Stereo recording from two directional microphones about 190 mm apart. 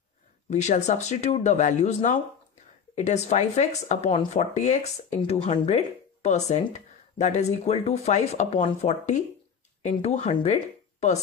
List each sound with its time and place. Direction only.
0.5 s speech: 35° left (ahead or behind)